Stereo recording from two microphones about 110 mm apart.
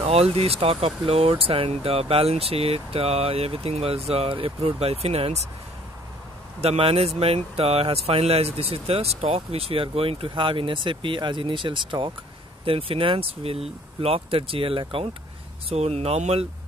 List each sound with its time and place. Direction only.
0.0 s speech: 65° right (ahead or behind)
6.6 s speech: 65° right (ahead or behind); by 12.1 s 45° right (ahead or behind)
12.6 s speech: 55° right (ahead or behind)
15.7 s speech: 75° right (ahead or behind)